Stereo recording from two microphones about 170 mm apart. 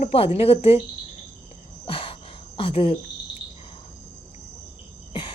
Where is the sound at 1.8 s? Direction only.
30° left (ahead or behind).